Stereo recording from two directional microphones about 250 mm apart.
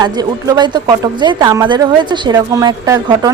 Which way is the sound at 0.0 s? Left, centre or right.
Centre.